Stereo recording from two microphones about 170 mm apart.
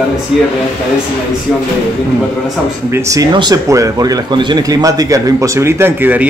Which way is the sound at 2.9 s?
20° right (ahead or behind).